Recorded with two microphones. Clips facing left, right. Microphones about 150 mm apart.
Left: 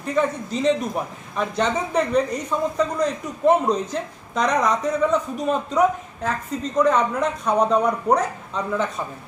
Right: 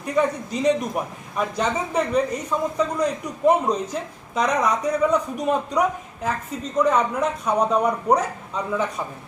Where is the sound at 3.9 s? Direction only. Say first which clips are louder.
Left 1 dB; 10° right (ahead or behind).